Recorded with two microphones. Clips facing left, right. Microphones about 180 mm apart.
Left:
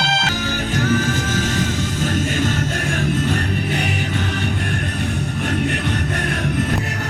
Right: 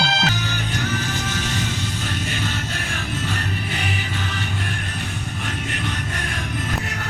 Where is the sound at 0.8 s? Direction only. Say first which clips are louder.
Left 9 dB; 45° left (ahead or behind).